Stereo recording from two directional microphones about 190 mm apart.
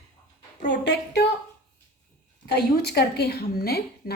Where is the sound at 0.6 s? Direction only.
65° left (ahead or behind).